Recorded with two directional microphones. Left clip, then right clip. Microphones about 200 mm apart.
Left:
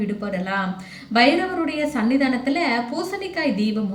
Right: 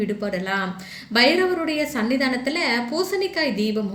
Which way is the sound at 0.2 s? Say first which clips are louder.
Even; 45° right (ahead or behind).